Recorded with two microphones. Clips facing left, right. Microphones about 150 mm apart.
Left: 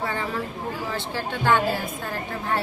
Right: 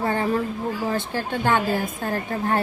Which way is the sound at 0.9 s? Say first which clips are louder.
Right 4 dB; 50° right (ahead or behind).